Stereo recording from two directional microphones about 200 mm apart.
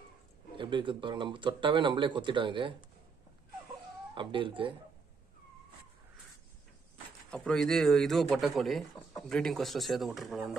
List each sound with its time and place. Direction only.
0.6 s speech: 25° right (ahead or behind)
4.1 s speech: 25° right (ahead or behind)
7.2 s speech: 5° left (ahead or behind)